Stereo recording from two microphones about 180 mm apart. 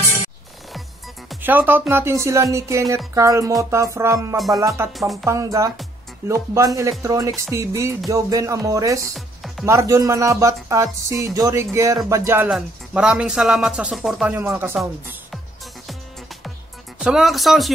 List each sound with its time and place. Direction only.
1.4 s speech: 10° right (ahead or behind)
4.9 s speech: centre (ahead or behind)
5.2 s speech: 15° right (ahead or behind)
9.1 s music: centre (ahead or behind)
9.7 s speech: 15° right (ahead or behind)
12.4 s speech: 5° right (ahead or behind)
17.0 s speech: centre (ahead or behind)